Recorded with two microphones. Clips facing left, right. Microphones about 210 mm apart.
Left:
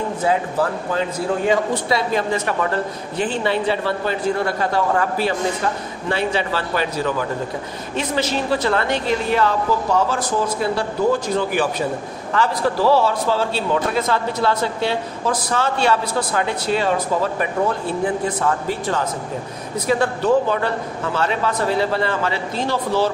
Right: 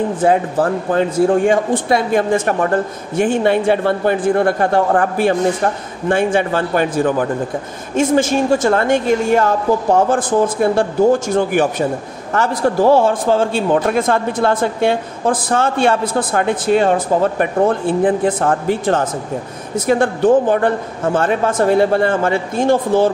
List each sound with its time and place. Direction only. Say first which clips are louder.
0.2 s a man's voice: right 4 dB; 50° right (ahead or behind)